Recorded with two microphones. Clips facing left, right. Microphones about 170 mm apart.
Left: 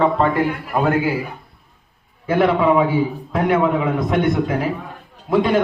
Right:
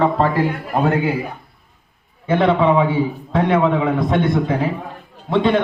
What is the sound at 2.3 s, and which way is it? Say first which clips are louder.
A man's voice: even; 25° right (ahead or behind).